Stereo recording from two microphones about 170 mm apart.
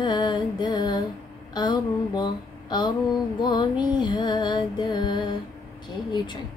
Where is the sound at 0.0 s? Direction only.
25° left (ahead or behind).